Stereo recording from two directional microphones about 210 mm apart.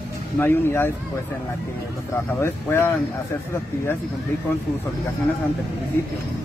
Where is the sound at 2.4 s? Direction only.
10° left (ahead or behind).